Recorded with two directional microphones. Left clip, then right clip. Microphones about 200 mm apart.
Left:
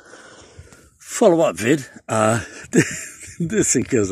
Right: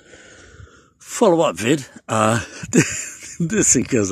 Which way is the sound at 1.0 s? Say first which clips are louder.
Even; 10° right (ahead or behind).